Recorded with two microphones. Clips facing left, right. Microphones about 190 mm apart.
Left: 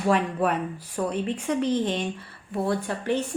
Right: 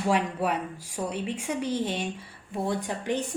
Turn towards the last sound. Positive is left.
turn(degrees=-15)  # may be behind; listen again after turning